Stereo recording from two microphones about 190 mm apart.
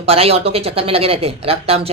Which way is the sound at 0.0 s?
30° right (ahead or behind).